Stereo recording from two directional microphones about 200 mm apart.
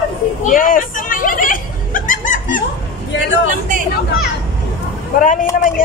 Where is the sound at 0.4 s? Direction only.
45° left (ahead or behind).